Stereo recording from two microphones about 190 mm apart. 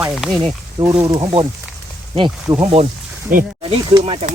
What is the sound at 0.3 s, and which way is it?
Speech, 20° right (ahead or behind).